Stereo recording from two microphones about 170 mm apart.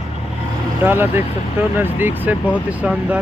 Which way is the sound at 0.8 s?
10° right (ahead or behind).